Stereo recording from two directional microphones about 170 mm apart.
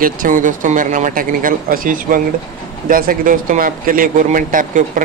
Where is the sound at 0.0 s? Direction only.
50° right (ahead or behind).